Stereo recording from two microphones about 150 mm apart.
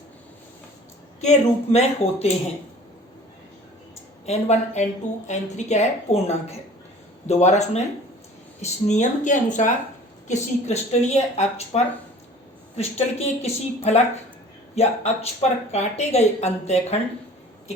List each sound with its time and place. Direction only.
1.2 s a woman's voice: 50° left (ahead or behind)
4.3 s a woman's voice: 50° left (ahead or behind)